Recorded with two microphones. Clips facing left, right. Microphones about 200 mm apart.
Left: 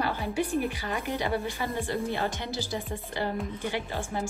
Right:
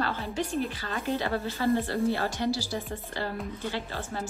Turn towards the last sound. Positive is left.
turn(degrees=15)  # may be behind; listen again after turning